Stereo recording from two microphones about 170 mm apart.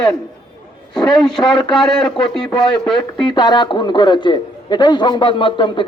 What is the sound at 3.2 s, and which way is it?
A man's voice, 25° left (ahead or behind).